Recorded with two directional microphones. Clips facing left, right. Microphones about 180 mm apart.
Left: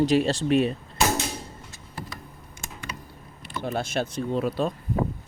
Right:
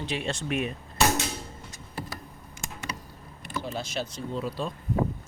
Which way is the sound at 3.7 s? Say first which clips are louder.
Left 6 dB; 55° left (ahead or behind).